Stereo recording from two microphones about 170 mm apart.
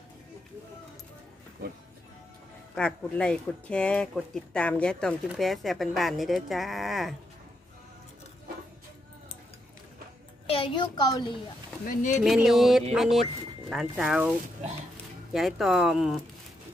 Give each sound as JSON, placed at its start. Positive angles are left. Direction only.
{"t": 2.7, "sound": "speech", "side_deg": 5}
{"t": 10.5, "sound": "a child's voice", "side_deg": 30}
{"t": 11.8, "sound": "speech", "side_deg": 50}
{"t": 12.2, "sound": "speech", "side_deg": -5}
{"t": 15.3, "sound": "speech", "side_deg": 0}